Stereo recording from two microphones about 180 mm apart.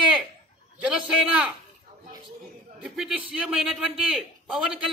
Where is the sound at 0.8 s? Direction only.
5° right (ahead or behind).